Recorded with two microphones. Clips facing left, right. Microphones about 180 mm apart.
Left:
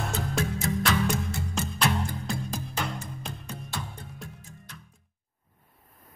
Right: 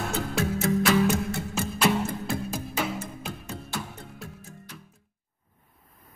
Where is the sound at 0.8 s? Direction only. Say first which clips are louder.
Right 4 dB; 5° right (ahead or behind).